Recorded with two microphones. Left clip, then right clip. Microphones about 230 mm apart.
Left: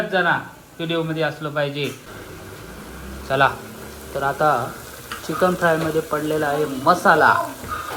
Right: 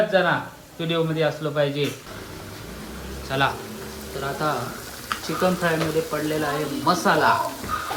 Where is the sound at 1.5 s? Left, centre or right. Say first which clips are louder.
Even; centre.